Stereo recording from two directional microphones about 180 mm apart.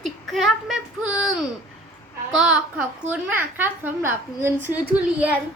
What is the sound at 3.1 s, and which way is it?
A woman's voice, 10° right (ahead or behind).